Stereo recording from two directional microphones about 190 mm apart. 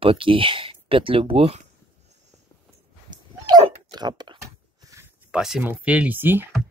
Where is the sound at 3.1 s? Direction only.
20° right (ahead or behind).